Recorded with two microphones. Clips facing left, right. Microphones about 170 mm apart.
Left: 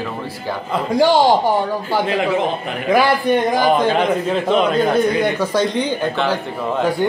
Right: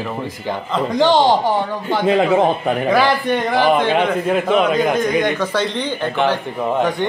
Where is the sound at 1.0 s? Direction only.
10° left (ahead or behind).